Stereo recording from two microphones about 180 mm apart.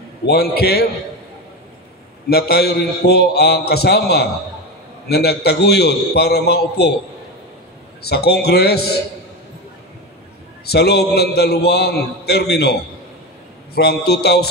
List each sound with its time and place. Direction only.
0.3 s a man's voice: 60° left (ahead or behind)
2.2 s a man's voice: 60° left (ahead or behind)
8.0 s a man's voice: 65° left (ahead or behind)
10.6 s a man's voice: 65° left (ahead or behind)
13.7 s a man's voice: 65° left (ahead or behind)